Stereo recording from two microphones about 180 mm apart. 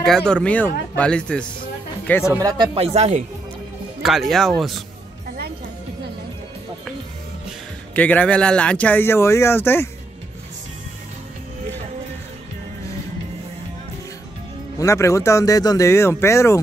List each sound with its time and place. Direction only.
0.0 s speech: 5° left (ahead or behind)
2.4 s speech: 25° right (ahead or behind)
4.0 s speech: centre (ahead or behind)
7.9 s speech: 10° left (ahead or behind)
14.8 s speech: 15° left (ahead or behind)